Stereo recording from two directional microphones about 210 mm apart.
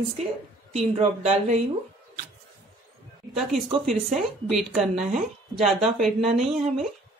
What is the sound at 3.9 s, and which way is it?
A woman's voice, centre (ahead or behind).